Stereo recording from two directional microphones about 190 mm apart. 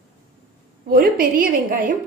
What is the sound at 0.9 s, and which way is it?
A woman's voice, 50° right (ahead or behind).